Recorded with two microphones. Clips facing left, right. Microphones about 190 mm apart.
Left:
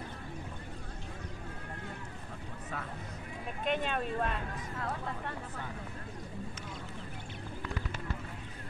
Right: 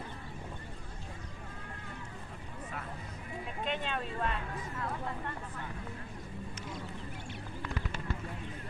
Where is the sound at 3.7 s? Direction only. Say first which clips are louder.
Left 5 dB; 50° left (ahead or behind).